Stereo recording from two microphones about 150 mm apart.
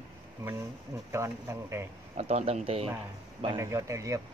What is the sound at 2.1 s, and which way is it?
Speech, 45° right (ahead or behind).